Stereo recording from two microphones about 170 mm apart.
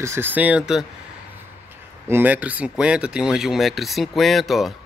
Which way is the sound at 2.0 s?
10° right (ahead or behind).